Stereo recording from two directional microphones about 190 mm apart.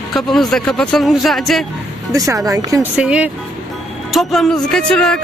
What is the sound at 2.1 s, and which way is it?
Speech, 15° right (ahead or behind).